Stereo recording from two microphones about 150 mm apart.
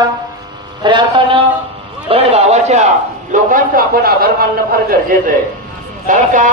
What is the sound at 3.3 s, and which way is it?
A man's voice, 65° right (ahead or behind).